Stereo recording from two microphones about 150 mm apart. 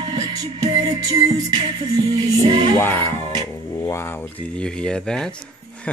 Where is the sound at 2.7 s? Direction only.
15° left (ahead or behind).